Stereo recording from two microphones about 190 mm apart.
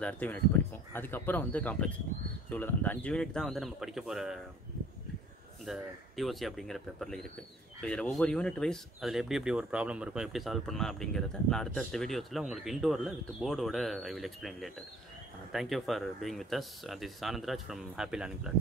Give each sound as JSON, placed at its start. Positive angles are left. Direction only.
{"t": 0.0, "sound": "speech", "side_deg": 10}
{"t": 5.7, "sound": "speech", "side_deg": 0}